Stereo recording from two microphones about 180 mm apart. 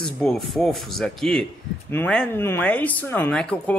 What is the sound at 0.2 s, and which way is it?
Speech, centre (ahead or behind).